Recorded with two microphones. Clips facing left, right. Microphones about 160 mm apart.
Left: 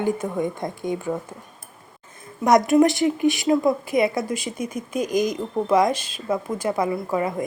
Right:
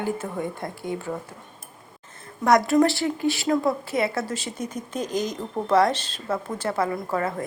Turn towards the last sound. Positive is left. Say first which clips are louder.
# left 3 dB
turn(degrees=15)  # may be behind; listen again after turning